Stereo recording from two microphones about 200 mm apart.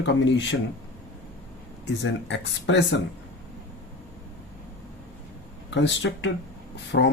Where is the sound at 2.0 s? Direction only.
65° left (ahead or behind).